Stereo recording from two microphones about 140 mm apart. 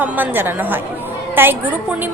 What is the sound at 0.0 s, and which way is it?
A woman's voice, 15° right (ahead or behind).